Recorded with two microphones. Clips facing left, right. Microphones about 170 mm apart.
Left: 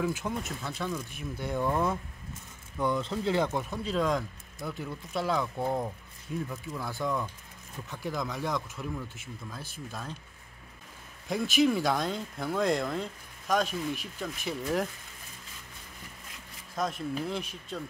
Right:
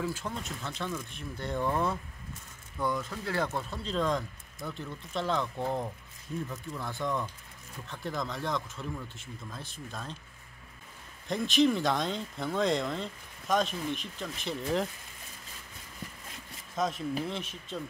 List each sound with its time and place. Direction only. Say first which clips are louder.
0.0 s speech: left 4 dB; 15° left (ahead or behind)
2.8 s speech: left 4 dB; 25° left (ahead or behind)
6.4 s speech: left 1 dB; 5° right (ahead or behind)
6.8 s speech: left 1 dB; 10° left (ahead or behind)
11.2 s speech: even; 5° left (ahead or behind)
16.7 s speech: right 1 dB; centre (ahead or behind)